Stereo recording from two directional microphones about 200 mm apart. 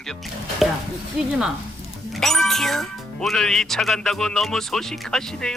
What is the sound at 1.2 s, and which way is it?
Speech, centre (ahead or behind).